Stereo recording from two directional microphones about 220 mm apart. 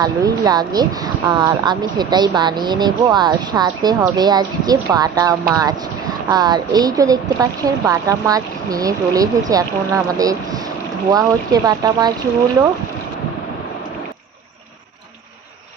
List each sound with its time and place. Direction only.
0.0 s speech: 15° right (ahead or behind)